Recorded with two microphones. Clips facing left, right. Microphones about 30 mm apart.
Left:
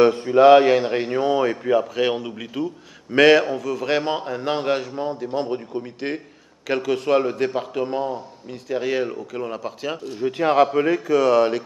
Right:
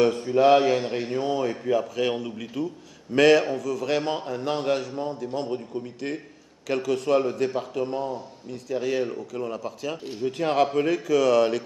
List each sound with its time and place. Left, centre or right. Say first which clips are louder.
0.0 s a man's voice: left 6 dB; left